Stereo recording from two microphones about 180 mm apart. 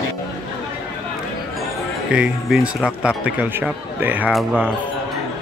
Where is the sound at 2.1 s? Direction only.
5° right (ahead or behind).